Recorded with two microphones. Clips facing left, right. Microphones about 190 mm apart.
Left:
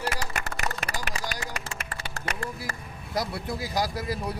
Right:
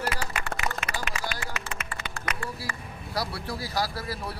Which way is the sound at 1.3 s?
40° left (ahead or behind).